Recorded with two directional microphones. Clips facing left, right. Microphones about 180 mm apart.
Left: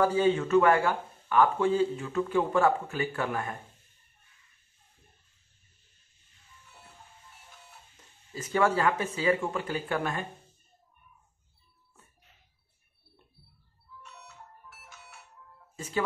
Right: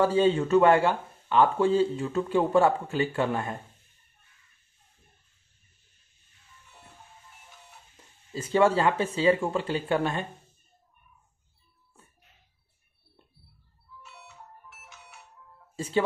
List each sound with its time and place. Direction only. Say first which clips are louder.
0.0 s speech: right 2 dB; 30° right (ahead or behind)
8.3 s speech: right 4 dB; 30° right (ahead or behind)
14.0 s music: right 1 dB; centre (ahead or behind)
15.7 s music: right 7 dB; 30° right (ahead or behind)